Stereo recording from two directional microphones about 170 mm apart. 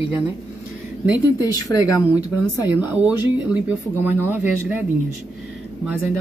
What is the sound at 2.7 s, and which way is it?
Speech, 10° right (ahead or behind).